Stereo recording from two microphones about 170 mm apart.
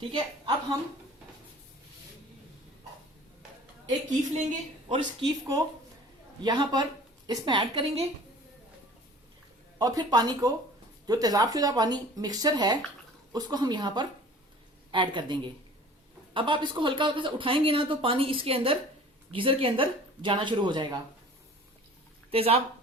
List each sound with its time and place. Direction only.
0.1 s speech: 25° right (ahead or behind)
4.9 s speech: 25° right (ahead or behind)
9.7 s speech: 25° right (ahead or behind)
22.3 s speech: 35° right (ahead or behind)